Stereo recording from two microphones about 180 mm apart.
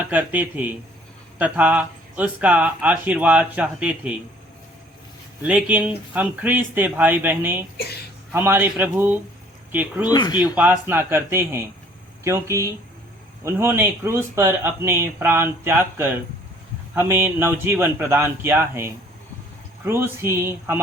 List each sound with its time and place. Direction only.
0.0 s speech: 10° right (ahead or behind)
5.4 s speech: 10° right (ahead or behind)
10.1 s speech: 20° left (ahead or behind)
10.5 s speech: 10° right (ahead or behind)